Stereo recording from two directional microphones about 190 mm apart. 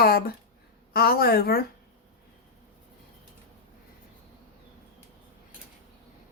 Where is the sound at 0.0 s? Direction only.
55° left (ahead or behind).